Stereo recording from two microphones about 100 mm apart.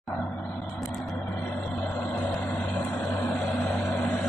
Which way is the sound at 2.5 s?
10° left (ahead or behind).